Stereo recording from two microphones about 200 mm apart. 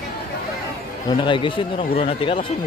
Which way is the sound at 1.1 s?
25° left (ahead or behind).